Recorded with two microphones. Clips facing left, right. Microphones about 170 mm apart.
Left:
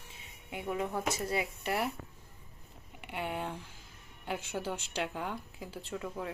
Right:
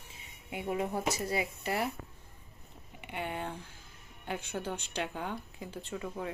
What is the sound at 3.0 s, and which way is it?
A woman's voice, centre (ahead or behind).